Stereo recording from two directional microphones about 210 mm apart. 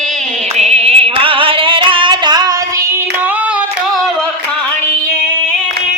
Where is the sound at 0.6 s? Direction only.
30° right (ahead or behind).